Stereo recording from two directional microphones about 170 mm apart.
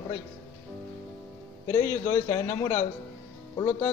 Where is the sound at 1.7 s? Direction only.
15° left (ahead or behind).